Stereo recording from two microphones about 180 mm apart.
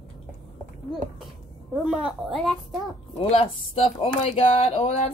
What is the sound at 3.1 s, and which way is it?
Speech, 30° left (ahead or behind).